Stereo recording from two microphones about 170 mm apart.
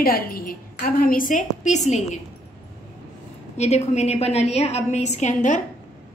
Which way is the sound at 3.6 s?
40° left (ahead or behind).